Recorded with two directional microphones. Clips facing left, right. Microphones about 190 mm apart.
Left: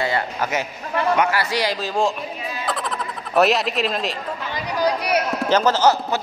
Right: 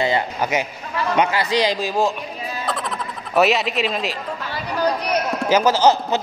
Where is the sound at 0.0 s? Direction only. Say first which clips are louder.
Right 2 dB; 20° right (ahead or behind).